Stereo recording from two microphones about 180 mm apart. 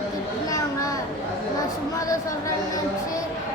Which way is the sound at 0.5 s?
20° left (ahead or behind).